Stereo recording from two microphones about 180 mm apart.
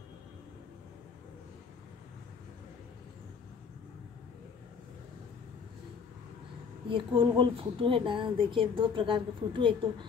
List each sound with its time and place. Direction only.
6.9 s speech: 25° right (ahead or behind)